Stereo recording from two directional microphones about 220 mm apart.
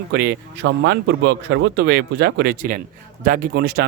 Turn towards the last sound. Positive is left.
turn(degrees=-45)  # may be behind; listen again after turning